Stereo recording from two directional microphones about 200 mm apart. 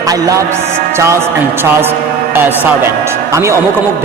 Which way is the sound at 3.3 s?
15° right (ahead or behind).